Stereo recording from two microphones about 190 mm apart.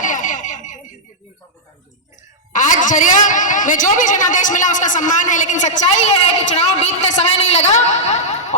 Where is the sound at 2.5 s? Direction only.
40° left (ahead or behind).